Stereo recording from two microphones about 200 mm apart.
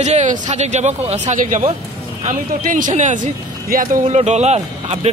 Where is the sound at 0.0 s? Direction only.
35° right (ahead or behind).